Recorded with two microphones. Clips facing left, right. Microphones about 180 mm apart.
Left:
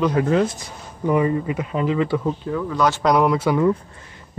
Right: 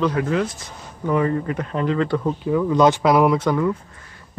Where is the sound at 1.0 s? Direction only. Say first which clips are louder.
Left 1 dB; 10° left (ahead or behind).